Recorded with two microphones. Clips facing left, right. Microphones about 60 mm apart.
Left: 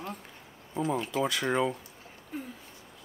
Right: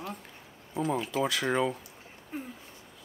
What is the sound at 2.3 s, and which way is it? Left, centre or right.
Speech, right.